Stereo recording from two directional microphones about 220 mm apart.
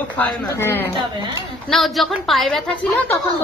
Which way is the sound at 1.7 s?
Centre (ahead or behind).